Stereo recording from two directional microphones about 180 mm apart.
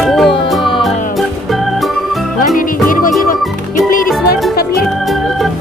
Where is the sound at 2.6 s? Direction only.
50° left (ahead or behind).